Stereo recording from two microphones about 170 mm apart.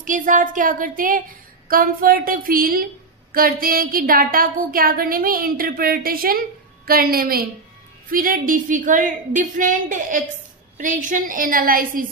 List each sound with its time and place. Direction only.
0.0 s a woman's voice: 50° right (ahead or behind)